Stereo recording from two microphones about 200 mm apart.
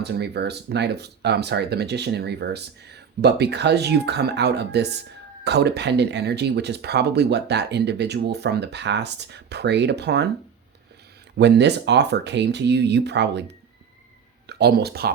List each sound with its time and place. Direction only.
0.0 s speech: 55° right (ahead or behind)
11.3 s speech: 60° right (ahead or behind)
14.4 s speech: 55° right (ahead or behind)